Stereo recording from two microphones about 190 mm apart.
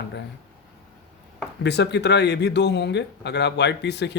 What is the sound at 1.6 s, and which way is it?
Speech, 65° left (ahead or behind).